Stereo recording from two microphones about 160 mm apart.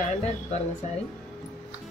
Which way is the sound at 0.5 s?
45° left (ahead or behind).